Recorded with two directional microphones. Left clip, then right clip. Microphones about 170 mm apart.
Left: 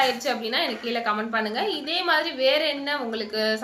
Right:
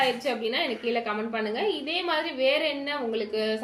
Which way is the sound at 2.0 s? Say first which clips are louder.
Left 4 dB; 40° left (ahead or behind).